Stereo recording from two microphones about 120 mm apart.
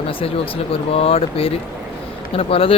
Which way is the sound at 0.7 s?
55° left (ahead or behind).